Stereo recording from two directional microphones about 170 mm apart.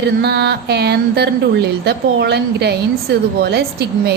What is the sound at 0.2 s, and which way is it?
A woman's voice, 75° right (ahead or behind).